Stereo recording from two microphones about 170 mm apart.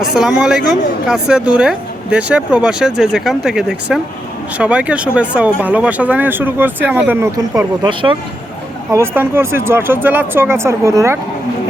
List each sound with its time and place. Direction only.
0.0 s speech: centre (ahead or behind)
7.8 s speech: 30° right (ahead or behind)
8.9 s speech: 15° right (ahead or behind)